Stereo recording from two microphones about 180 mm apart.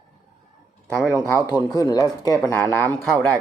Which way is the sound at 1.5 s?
25° left (ahead or behind).